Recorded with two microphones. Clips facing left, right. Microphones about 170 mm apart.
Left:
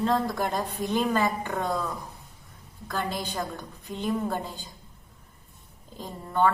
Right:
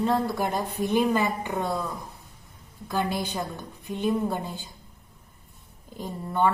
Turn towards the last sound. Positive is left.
turn(degrees=-15)  # may be behind; listen again after turning